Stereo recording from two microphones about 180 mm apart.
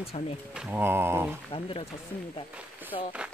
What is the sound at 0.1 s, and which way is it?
Speech, 35° left (ahead or behind).